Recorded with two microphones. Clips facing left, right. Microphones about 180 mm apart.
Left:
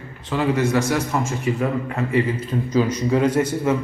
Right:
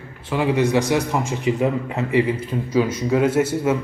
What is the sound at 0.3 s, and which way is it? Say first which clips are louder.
A man's voice: right 1 dB; 10° right (ahead or behind).